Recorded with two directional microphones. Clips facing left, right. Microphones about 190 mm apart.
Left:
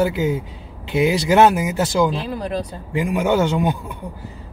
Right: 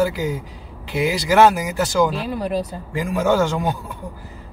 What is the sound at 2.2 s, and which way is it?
Speech, 5° right (ahead or behind).